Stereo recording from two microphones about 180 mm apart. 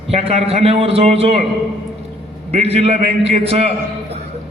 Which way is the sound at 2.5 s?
35° right (ahead or behind).